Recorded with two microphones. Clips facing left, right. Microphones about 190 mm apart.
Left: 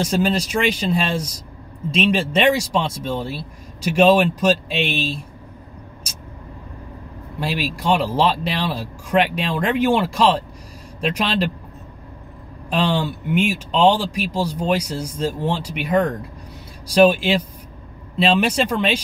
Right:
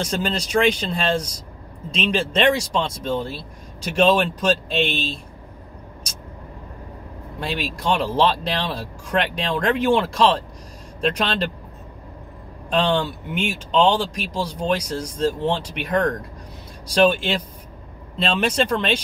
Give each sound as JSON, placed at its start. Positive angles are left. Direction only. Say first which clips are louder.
{"t": 0.0, "sound": "speech", "louder": "left 5 dB", "side_deg": 5}
{"t": 7.3, "sound": "speech", "louder": "left 3 dB", "side_deg": 5}
{"t": 12.6, "sound": "speech", "louder": "even", "side_deg": 10}